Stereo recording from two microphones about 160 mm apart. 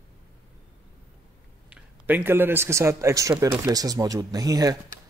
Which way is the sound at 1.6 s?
10° right (ahead or behind).